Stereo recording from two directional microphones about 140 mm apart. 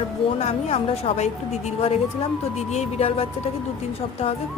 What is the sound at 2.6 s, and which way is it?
A woman's voice, 50° left (ahead or behind).